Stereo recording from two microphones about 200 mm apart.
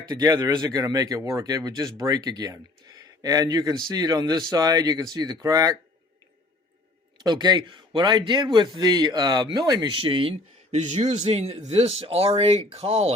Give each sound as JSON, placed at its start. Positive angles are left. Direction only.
{"t": 0.0, "sound": "speech", "side_deg": -20}
{"t": 7.2, "sound": "speech", "side_deg": -20}